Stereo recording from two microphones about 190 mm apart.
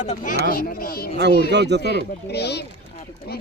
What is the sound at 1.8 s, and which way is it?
Speech, 60° left (ahead or behind).